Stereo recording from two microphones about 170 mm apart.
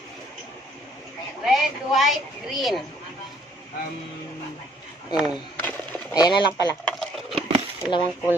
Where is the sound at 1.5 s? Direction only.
Centre (ahead or behind).